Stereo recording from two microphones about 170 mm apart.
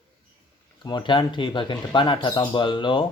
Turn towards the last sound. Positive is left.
turn(degrees=30)  # may be behind; listen again after turning